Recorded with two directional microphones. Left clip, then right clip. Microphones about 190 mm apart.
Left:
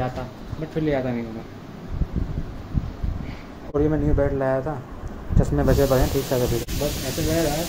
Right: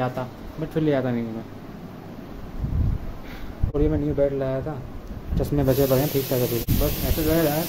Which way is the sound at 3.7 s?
5° left (ahead or behind).